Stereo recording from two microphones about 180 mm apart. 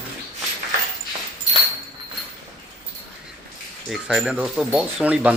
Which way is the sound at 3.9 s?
Centre (ahead or behind).